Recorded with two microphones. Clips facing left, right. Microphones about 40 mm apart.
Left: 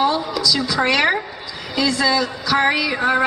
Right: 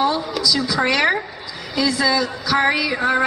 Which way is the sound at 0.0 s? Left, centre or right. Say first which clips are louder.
Left 1 dB; centre.